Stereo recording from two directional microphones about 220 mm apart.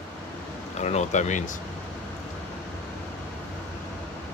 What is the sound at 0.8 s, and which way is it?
Speech, 30° left (ahead or behind).